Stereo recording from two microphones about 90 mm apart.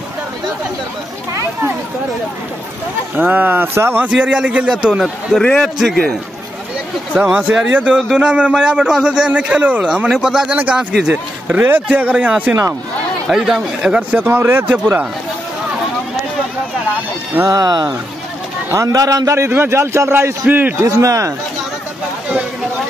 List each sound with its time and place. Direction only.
3.2 s a man's voice: 20° right (ahead or behind)
5.4 s a man's voice: 10° left (ahead or behind)
7.2 s a man's voice: 10° right (ahead or behind)
13.3 s a man's voice: 5° right (ahead or behind)
14.3 s a man's voice: 25° right (ahead or behind)
17.4 s a man's voice: 45° right (ahead or behind); by 20.7 s 20° right (ahead or behind)
20.8 s speech: 35° right (ahead or behind)